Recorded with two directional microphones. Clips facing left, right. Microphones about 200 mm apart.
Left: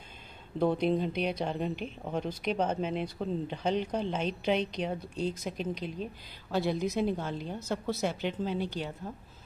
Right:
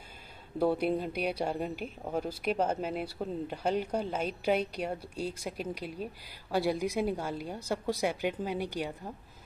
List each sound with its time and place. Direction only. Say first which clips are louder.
0.6 s speech: left 1 dB; 5° right (ahead or behind)